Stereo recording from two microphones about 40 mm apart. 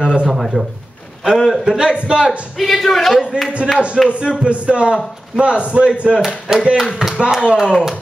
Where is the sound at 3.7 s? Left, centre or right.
Right.